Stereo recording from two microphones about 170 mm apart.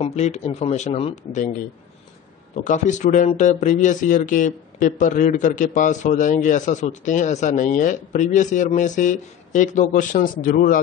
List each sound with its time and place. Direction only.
0.0 s speech: 40° left (ahead or behind)
2.5 s speech: 45° left (ahead or behind)